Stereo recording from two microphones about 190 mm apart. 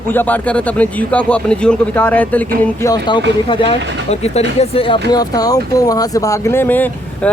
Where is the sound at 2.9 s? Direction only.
25° left (ahead or behind).